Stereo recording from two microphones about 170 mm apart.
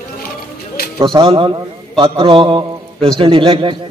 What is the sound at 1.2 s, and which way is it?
A man's voice, 30° right (ahead or behind).